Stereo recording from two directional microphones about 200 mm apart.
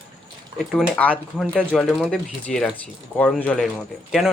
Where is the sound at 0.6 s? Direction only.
5° left (ahead or behind).